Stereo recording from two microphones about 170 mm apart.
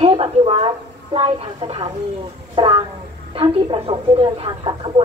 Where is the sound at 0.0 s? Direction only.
35° right (ahead or behind).